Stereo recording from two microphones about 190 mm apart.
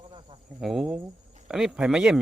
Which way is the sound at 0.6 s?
Centre (ahead or behind).